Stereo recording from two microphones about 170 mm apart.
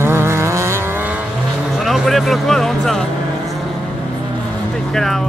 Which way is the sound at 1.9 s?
Centre (ahead or behind).